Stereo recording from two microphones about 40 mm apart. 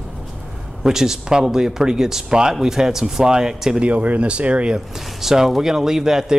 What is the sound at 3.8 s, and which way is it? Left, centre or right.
Speech, right.